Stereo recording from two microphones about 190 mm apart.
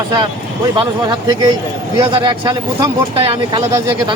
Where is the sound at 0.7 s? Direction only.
20° right (ahead or behind).